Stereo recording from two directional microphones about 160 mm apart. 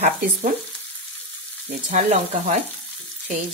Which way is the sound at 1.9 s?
45° right (ahead or behind).